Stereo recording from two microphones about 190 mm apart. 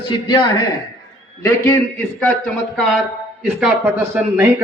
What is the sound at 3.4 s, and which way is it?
Speech, 5° right (ahead or behind).